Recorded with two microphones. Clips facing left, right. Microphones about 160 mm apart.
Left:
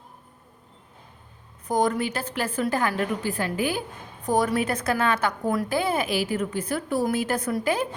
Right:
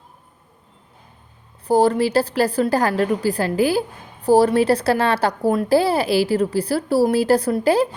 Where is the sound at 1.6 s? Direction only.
35° right (ahead or behind).